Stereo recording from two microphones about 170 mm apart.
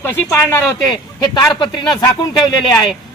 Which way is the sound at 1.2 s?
25° left (ahead or behind).